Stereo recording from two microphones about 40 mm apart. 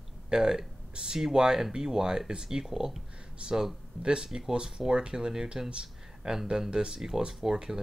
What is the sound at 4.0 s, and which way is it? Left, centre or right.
Speech, right.